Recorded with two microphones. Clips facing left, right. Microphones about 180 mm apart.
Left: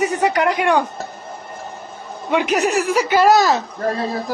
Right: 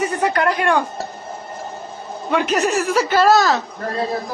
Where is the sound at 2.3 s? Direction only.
15° left (ahead or behind).